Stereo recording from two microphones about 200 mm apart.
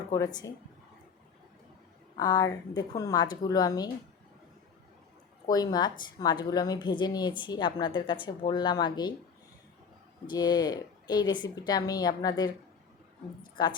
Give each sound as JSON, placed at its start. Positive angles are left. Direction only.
{"t": 0.1, "sound": "a woman's voice", "side_deg": 15}
{"t": 2.1, "sound": "a woman's voice", "side_deg": 20}
{"t": 5.5, "sound": "a woman's voice", "side_deg": 20}
{"t": 10.2, "sound": "a woman's voice", "side_deg": 20}
{"t": 13.6, "sound": "a woman's voice", "side_deg": 20}